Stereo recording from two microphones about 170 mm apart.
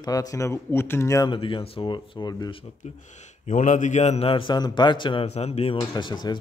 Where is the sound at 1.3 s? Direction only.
30° left (ahead or behind).